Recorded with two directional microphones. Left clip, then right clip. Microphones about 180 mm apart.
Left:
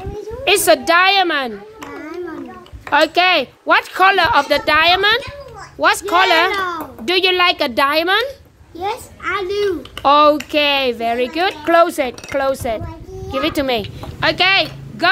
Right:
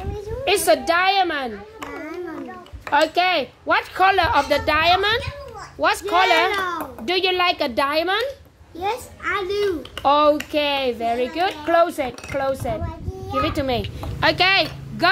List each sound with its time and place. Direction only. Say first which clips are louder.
0.5 s a child's voice: left 5 dB; 20° left (ahead or behind)
2.0 s a sound: left 4 dB; 25° left (ahead or behind)
2.9 s a woman's voice: left 5 dB; 20° left (ahead or behind)
6.5 s a woman's voice: left 3 dB; 20° left (ahead or behind)
14.2 s speech: left 3 dB; 10° right (ahead or behind)